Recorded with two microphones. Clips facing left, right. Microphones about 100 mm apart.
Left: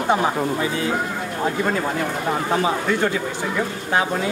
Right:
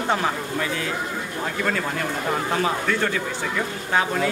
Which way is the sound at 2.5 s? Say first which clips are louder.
Left 4 dB; 20° left (ahead or behind).